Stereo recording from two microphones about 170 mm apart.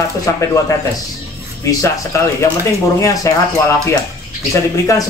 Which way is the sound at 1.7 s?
20° left (ahead or behind).